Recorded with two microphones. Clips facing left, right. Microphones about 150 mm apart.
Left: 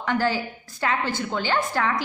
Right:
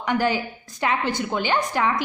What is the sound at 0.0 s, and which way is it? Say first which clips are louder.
A woman's voice: right 1 dB; 15° right (ahead or behind).